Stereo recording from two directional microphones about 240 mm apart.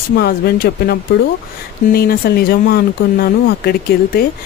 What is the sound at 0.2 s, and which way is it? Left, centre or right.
Speech, left.